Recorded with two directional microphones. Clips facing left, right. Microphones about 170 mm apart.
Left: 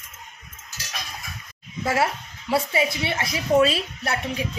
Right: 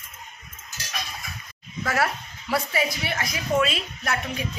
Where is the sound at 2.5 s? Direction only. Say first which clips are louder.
Left 3 dB; 25° left (ahead or behind).